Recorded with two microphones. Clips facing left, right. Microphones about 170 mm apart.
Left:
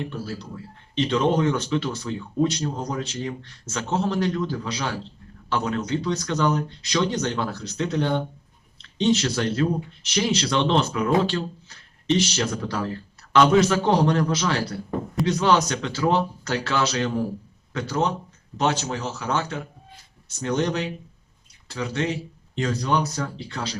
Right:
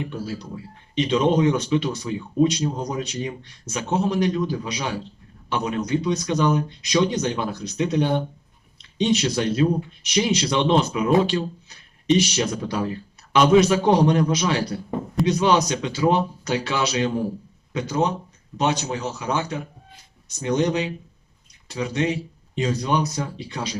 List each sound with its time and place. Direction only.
0.3 s speech: 15° right (ahead or behind)